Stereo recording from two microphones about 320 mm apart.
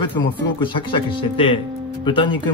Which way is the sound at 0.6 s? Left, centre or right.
Centre.